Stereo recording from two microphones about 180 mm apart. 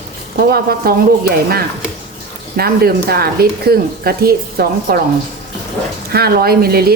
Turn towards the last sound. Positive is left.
turn(degrees=-60)  # may be behind; listen again after turning